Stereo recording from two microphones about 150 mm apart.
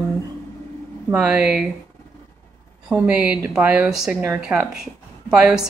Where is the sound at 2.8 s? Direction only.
5° right (ahead or behind).